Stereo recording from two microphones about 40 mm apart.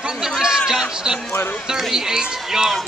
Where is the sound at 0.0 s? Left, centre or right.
Centre.